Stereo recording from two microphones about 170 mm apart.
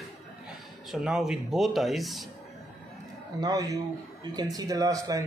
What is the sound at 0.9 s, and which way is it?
Speech, centre (ahead or behind).